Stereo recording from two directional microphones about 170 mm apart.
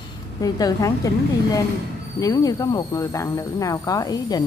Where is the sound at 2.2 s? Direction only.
20° left (ahead or behind).